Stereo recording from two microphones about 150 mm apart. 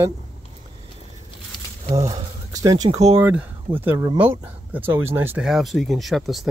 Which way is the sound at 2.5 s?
25° right (ahead or behind).